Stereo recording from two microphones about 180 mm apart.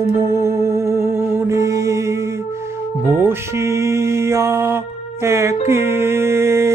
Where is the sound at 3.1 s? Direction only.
15° right (ahead or behind).